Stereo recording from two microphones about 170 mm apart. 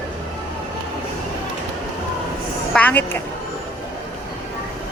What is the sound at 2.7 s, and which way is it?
Speech, 10° left (ahead or behind).